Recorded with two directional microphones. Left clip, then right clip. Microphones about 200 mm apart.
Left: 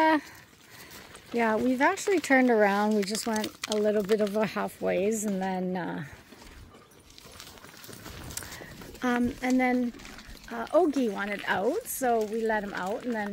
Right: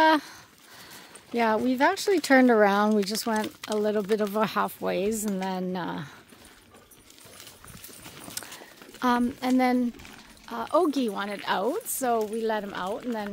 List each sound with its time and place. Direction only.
0.0 s a sound: 20° right (ahead or behind)
1.3 s speech: 20° right (ahead or behind)
3.4 s speech: 20° left (ahead or behind)
3.8 s speech: 20° right (ahead or behind)
8.4 s walk: 15° right (ahead or behind)
9.0 s speech: 20° right (ahead or behind)
10.5 s a woman's voice: 10° right (ahead or behind)